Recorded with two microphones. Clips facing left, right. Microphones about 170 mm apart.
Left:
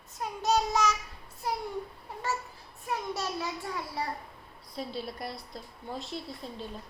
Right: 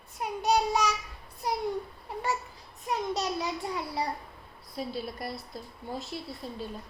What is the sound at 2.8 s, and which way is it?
A child's voice, 15° right (ahead or behind).